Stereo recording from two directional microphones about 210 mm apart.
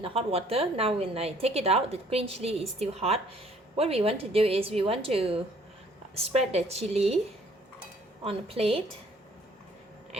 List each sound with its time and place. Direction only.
0.0 s a woman's voice: 25° right (ahead or behind)
8.2 s a woman's voice: 25° right (ahead or behind)